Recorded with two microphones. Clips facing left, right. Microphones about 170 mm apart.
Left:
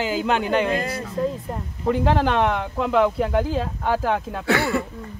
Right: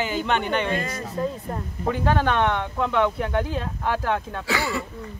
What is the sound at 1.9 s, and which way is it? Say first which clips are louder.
Speech: left 3 dB; centre (ahead or behind).